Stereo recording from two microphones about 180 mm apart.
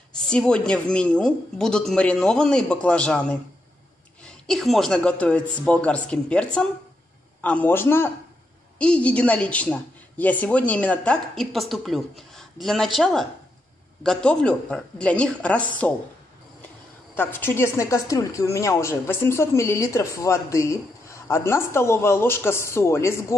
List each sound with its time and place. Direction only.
0.3 s a woman's voice: 5° left (ahead or behind)
17.1 s a woman's voice: 10° left (ahead or behind)